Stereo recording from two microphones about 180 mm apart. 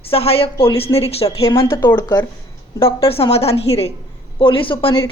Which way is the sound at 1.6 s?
15° left (ahead or behind).